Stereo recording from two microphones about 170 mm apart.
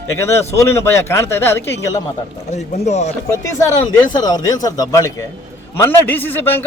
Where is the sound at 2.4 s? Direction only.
40° left (ahead or behind).